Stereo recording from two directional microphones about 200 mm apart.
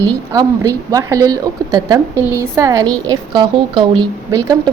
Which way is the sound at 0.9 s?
15° right (ahead or behind).